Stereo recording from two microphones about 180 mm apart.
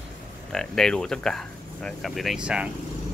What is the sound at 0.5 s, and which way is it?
Speech, 5° left (ahead or behind).